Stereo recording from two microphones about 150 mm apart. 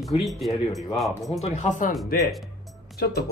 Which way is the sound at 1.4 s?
55° left (ahead or behind).